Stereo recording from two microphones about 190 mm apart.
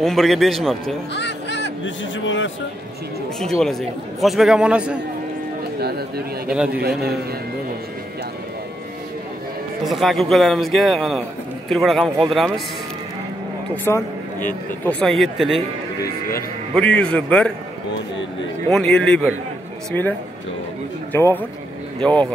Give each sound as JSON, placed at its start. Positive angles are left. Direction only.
{"t": 0.0, "sound": "a man's voice", "side_deg": 0}
{"t": 1.1, "sound": "a sound", "side_deg": 65}
{"t": 2.1, "sound": "speech", "side_deg": 80}
{"t": 3.3, "sound": "a man's voice", "side_deg": 0}
{"t": 5.6, "sound": "speech", "side_deg": -55}
{"t": 6.5, "sound": "a man's voice", "side_deg": -5}
{"t": 6.8, "sound": "a man's voice", "side_deg": -55}
{"t": 9.8, "sound": "a man's voice", "side_deg": 0}
{"t": 13.9, "sound": "a man's voice", "side_deg": 15}
{"t": 16.0, "sound": "speech", "side_deg": 50}
{"t": 16.7, "sound": "a man's voice", "side_deg": 5}
{"t": 18.7, "sound": "a man's voice", "side_deg": 5}